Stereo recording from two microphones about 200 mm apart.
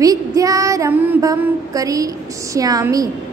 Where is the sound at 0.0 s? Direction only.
15° right (ahead or behind).